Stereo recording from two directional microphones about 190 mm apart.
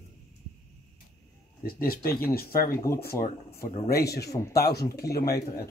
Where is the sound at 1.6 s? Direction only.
50° left (ahead or behind).